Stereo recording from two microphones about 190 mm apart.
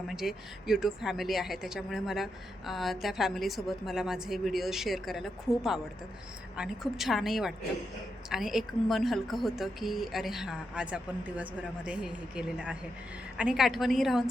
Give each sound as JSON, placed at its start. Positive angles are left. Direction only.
{"t": 0.1, "sound": "a woman's voice", "side_deg": 0}